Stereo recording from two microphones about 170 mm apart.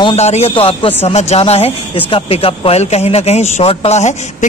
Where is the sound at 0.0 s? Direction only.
40° left (ahead or behind).